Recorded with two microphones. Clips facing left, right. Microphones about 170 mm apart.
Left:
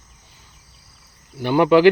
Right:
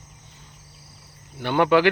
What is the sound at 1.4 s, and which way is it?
Speech, 10° left (ahead or behind).